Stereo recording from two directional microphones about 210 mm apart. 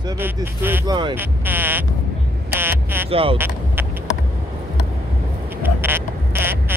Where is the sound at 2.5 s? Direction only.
10° right (ahead or behind).